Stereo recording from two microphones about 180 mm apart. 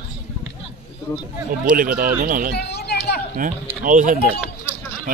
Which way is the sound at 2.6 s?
65° left (ahead or behind).